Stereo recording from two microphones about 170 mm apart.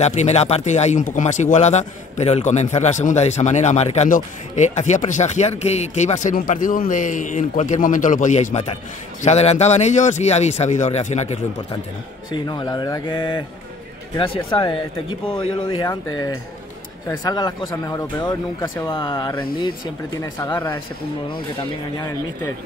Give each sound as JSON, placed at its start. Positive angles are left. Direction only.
{"t": 0.0, "sound": "speech", "side_deg": 40}
{"t": 12.3, "sound": "speech", "side_deg": 25}
{"t": 18.9, "sound": "speech", "side_deg": 30}
{"t": 20.2, "sound": "speech", "side_deg": 15}
{"t": 21.9, "sound": "speech", "side_deg": 15}